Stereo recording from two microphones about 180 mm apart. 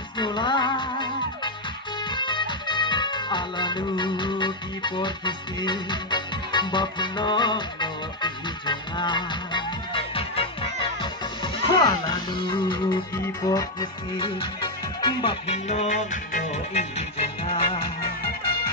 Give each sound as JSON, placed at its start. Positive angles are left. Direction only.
{"t": 0.2, "sound": "music", "side_deg": 25}
{"t": 17.5, "sound": "music", "side_deg": 25}